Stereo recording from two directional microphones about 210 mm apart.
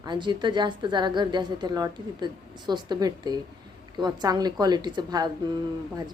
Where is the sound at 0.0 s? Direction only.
20° right (ahead or behind).